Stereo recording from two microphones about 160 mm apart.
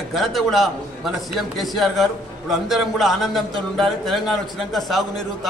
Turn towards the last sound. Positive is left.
turn(degrees=0)  # may be behind; listen again after turning